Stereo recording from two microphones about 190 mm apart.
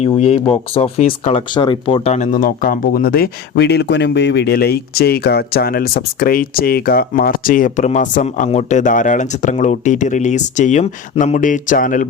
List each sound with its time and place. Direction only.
0.0 s speech: 30° left (ahead or behind)